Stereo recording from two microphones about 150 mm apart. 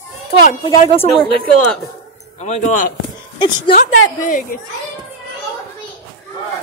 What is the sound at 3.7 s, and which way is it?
Speech, 60° left (ahead or behind).